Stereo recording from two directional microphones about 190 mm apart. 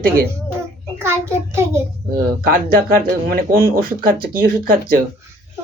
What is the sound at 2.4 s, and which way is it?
Speech, 50° right (ahead or behind).